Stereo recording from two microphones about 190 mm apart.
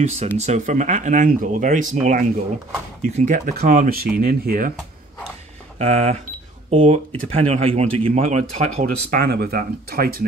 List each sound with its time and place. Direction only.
0.0 s speech: 35° right (ahead or behind)
3.0 s speech: 35° right (ahead or behind)
5.8 s speech: 35° right (ahead or behind)
9.1 s speech: 55° right (ahead or behind)